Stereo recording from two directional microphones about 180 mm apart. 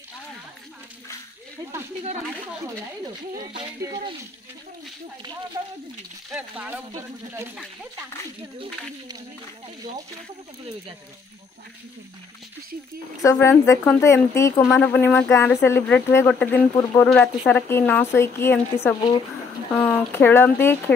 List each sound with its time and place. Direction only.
3.3 s speech: 20° right (ahead or behind)
6.3 s speech: 10° right (ahead or behind)
13.2 s a woman's voice: 15° left (ahead or behind)